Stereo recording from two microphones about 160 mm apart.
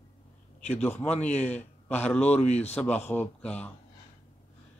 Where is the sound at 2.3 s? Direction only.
45° left (ahead or behind).